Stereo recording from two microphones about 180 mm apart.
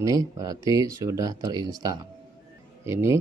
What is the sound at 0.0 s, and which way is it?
Speech, 20° right (ahead or behind).